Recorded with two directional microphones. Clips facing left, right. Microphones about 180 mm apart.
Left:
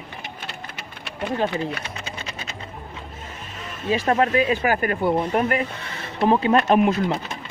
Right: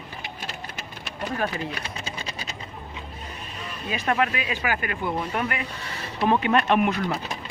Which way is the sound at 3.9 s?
30° left (ahead or behind).